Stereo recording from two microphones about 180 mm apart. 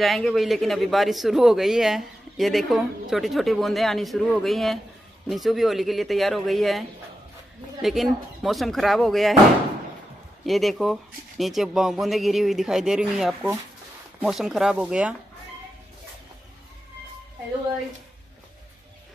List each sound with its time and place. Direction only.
0.0 s a man's voice: centre (ahead or behind)
7.8 s a man's voice: centre (ahead or behind)
10.4 s a man's voice: centre (ahead or behind)